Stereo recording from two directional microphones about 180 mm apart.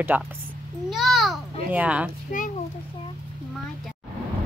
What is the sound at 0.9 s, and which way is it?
Babbling, centre (ahead or behind).